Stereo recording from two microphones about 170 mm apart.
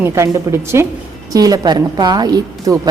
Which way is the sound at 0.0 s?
15° right (ahead or behind).